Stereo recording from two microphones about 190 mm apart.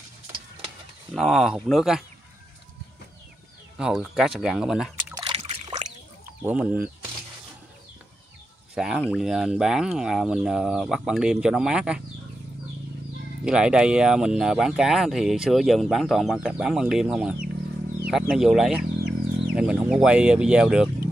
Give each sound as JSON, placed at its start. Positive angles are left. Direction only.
{"t": 1.1, "sound": "speech", "side_deg": 0}
{"t": 3.7, "sound": "speech", "side_deg": -5}
{"t": 5.1, "sound": "a sound", "side_deg": -30}
{"t": 6.4, "sound": "speech", "side_deg": -10}
{"t": 8.7, "sound": "speech", "side_deg": -5}
{"t": 13.4, "sound": "speech", "side_deg": -5}